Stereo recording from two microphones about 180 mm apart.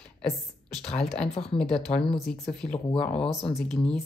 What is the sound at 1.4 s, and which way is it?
Speech, 30° left (ahead or behind).